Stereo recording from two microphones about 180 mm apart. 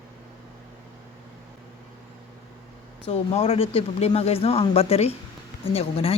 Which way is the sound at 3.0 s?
35° left (ahead or behind).